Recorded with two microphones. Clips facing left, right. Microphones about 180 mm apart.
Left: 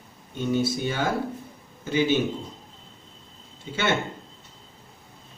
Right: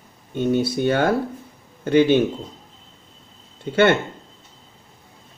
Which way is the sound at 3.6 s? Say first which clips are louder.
Right 10 dB; 60° right (ahead or behind).